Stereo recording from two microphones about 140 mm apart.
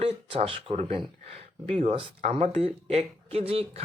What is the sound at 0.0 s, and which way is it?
Speech, 40° right (ahead or behind).